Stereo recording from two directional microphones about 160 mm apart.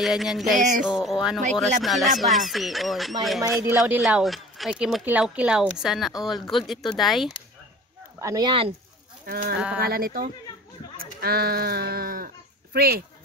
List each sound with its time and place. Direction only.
0.0 s speech: centre (ahead or behind)
0.6 s a sound: 55° right (ahead or behind)
0.8 s speech: 5° right (ahead or behind)
8.2 s speech: 25° right (ahead or behind)
9.2 s speech: 65° right (ahead or behind)